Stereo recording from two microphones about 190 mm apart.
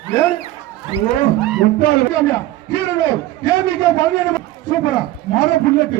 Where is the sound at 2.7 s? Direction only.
20° left (ahead or behind).